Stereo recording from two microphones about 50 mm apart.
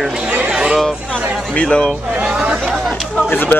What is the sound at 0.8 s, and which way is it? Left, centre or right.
Speech, centre.